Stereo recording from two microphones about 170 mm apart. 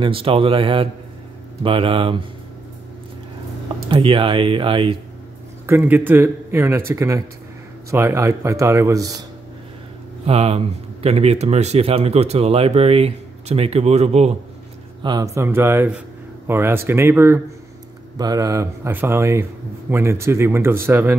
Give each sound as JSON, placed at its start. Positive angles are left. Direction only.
{"t": 0.0, "sound": "speech", "side_deg": -30}
{"t": 3.9, "sound": "speech", "side_deg": -30}
{"t": 5.7, "sound": "speech", "side_deg": -10}
{"t": 10.2, "sound": "speech", "side_deg": -35}
{"t": 15.0, "sound": "speech", "side_deg": -20}